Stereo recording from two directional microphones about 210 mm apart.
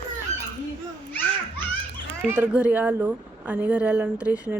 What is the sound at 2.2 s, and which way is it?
A woman's voice, 5° right (ahead or behind).